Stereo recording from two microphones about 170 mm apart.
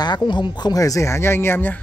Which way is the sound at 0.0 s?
25° left (ahead or behind).